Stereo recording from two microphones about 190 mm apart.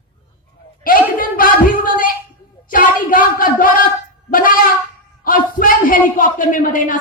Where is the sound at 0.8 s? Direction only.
50° left (ahead or behind).